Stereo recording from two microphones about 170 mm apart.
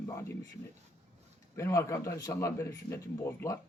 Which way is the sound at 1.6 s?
15° left (ahead or behind).